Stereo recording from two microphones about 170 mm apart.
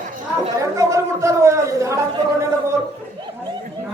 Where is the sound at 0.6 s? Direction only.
20° right (ahead or behind).